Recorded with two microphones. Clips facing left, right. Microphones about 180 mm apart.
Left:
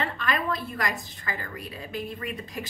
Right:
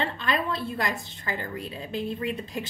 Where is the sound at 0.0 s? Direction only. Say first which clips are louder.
Right 1 dB; 30° right (ahead or behind).